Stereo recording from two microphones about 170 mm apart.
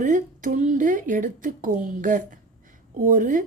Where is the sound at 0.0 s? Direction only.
50° right (ahead or behind).